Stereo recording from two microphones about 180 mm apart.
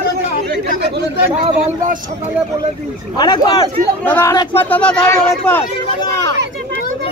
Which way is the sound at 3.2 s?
20° left (ahead or behind).